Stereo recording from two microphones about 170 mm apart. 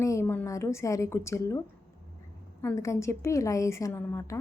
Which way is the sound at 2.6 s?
15° left (ahead or behind).